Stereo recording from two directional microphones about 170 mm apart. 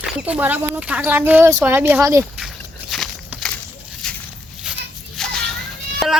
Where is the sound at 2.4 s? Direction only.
Centre (ahead or behind).